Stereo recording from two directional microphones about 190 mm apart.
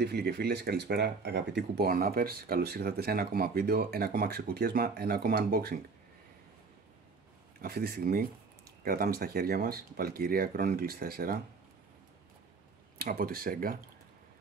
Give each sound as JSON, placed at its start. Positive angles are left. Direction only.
{"t": 0.0, "sound": "speech", "side_deg": -55}
{"t": 7.6, "sound": "speech", "side_deg": -55}
{"t": 13.0, "sound": "speech", "side_deg": -50}